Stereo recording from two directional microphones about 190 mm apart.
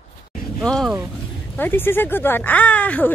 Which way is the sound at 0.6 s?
Centre (ahead or behind).